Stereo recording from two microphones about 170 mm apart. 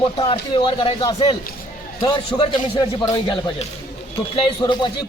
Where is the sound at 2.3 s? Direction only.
20° left (ahead or behind).